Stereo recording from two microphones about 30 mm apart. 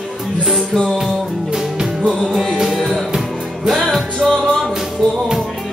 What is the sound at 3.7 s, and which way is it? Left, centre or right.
Music, centre.